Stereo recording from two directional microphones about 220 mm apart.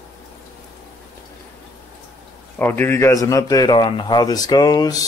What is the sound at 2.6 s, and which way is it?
Speech, 10° left (ahead or behind).